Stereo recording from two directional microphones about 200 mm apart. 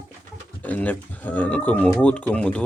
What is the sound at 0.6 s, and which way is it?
Speech, 10° left (ahead or behind).